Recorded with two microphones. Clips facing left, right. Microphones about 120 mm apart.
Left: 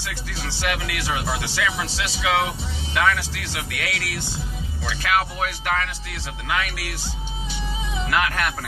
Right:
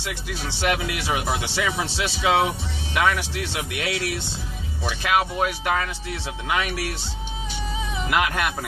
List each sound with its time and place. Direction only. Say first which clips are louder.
0.0 s speech: right 2 dB; 20° right (ahead or behind)
8.1 s speech: even; 20° right (ahead or behind)